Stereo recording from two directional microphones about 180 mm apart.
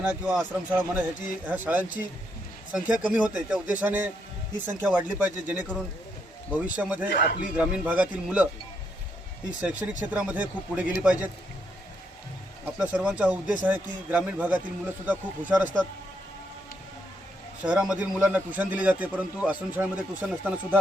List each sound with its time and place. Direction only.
0.0 s a man's voice: 5° right (ahead or behind)
7.1 s speech: 65° left (ahead or behind)
7.5 s a man's voice: 5° right (ahead or behind)
9.6 s a man's voice: 5° right (ahead or behind)
12.6 s a man's voice: 5° right (ahead or behind)
17.6 s a man's voice: 5° right (ahead or behind)